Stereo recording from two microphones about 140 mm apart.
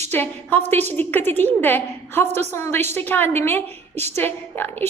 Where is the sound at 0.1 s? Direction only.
15° left (ahead or behind).